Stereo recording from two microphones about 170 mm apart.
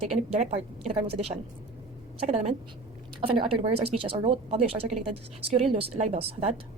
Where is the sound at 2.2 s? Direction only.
40° right (ahead or behind).